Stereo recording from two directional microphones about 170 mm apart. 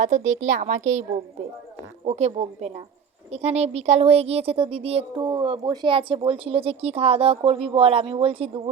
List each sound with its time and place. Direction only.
0.0 s a woman's voice: 45° right (ahead or behind)